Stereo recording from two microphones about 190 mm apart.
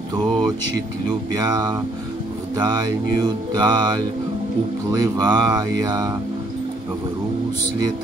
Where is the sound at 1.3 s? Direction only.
20° right (ahead or behind).